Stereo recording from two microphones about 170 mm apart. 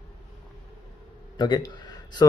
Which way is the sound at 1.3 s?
25° left (ahead or behind).